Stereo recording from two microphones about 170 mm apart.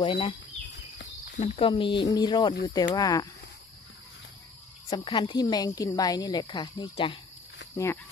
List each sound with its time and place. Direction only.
0.0 s speech: 30° left (ahead or behind)
0.7 s a sound: 90° left
1.4 s speech: 40° left (ahead or behind)
1.7 s speech: 30° left (ahead or behind)
4.8 s speech: 25° left (ahead or behind)
7.7 s speech: 15° left (ahead or behind)